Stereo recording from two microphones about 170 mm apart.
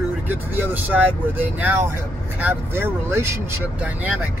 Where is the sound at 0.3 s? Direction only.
10° right (ahead or behind).